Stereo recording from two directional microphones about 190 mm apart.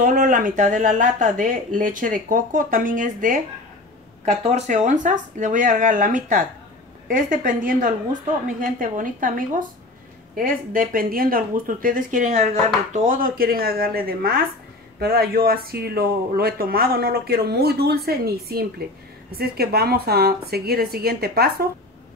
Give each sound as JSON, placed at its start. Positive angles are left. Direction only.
{"t": 0.0, "sound": "a woman's voice", "side_deg": -45}